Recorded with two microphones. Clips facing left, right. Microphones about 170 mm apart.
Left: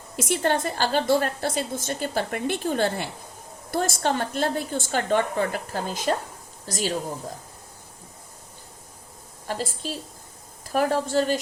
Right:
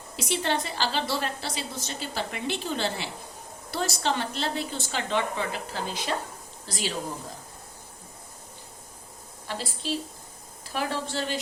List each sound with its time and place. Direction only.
0.2 s a woman's voice: 50° left (ahead or behind)
9.5 s a woman's voice: 45° left (ahead or behind)